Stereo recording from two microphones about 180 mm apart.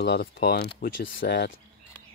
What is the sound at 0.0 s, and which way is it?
Speech, 65° left (ahead or behind).